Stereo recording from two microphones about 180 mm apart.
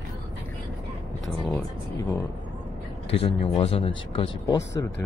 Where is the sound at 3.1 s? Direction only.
35° left (ahead or behind).